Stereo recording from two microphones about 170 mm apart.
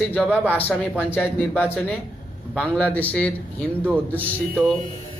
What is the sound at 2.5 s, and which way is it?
Speech, 5° left (ahead or behind).